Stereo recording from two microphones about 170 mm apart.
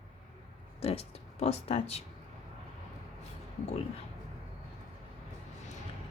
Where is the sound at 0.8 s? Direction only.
35° left (ahead or behind).